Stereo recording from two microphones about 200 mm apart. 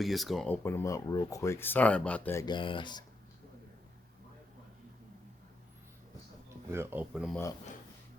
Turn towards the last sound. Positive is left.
turn(degrees=15)  # may be behind; listen again after turning